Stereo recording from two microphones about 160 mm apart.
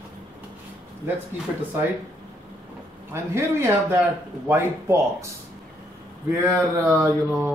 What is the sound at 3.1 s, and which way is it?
Mantra, 15° right (ahead or behind).